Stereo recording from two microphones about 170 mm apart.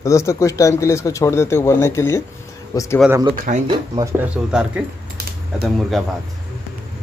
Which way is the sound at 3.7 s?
20° right (ahead or behind).